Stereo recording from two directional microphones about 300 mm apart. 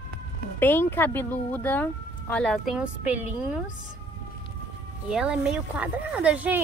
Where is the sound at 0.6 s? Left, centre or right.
Centre.